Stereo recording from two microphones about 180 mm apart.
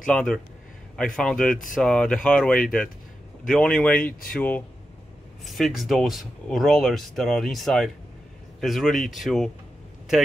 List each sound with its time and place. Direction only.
0.0 s speech: 5° left (ahead or behind)